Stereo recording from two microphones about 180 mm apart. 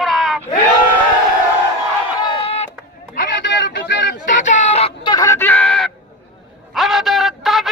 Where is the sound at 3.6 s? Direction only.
80° left.